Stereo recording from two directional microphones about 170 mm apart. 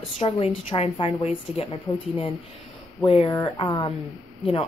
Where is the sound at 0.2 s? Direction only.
30° left (ahead or behind).